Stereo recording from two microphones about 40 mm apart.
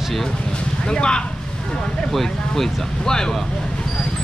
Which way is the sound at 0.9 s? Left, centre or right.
Left.